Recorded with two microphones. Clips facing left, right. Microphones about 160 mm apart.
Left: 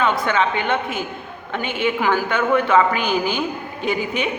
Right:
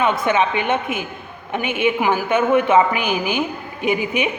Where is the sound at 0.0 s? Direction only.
15° right (ahead or behind).